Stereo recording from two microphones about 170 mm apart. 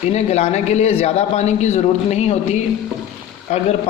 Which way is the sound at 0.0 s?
40° left (ahead or behind).